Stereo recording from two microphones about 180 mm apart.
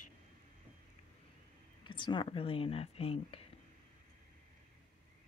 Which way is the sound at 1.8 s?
25° left (ahead or behind).